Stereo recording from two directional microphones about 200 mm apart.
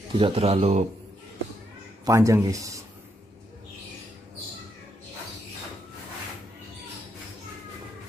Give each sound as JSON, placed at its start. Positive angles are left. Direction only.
{"t": 0.1, "sound": "a man's voice", "side_deg": -25}
{"t": 2.0, "sound": "speech", "side_deg": -15}